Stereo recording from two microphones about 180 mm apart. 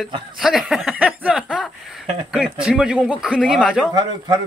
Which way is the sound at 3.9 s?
20° right (ahead or behind).